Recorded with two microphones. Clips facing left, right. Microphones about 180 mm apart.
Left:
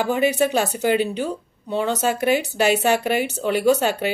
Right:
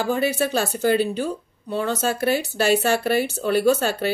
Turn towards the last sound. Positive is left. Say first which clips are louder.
# left 1 dB
turn(degrees=15)  # may be behind; listen again after turning